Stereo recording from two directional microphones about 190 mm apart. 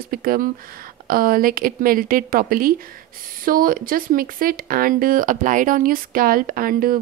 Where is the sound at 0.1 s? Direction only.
50° right (ahead or behind).